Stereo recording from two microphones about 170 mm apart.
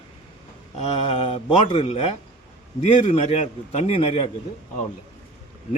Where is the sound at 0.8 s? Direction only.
35° left (ahead or behind).